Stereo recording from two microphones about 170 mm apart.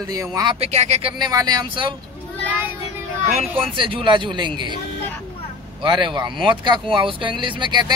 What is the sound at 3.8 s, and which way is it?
Speech, 30° right (ahead or behind).